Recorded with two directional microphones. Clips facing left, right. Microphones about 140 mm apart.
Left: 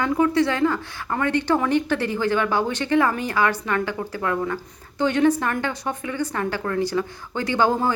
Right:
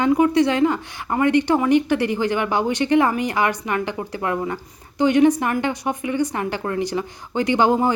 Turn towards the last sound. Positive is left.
turn(degrees=-20)  # may be behind; listen again after turning